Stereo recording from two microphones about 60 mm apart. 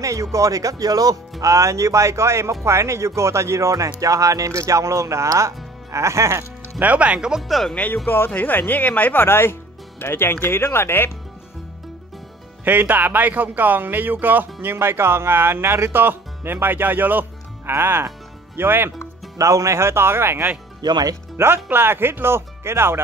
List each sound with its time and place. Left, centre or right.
0.0 s speech: right
1.4 s speech: right
6.8 s speech: right
7.4 s speech: centre
7.7 s speech: left
12.6 s speech: right
19.3 s speech: right